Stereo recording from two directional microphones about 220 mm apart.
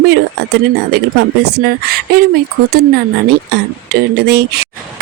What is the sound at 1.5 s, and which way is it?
Speech, 45° right (ahead or behind).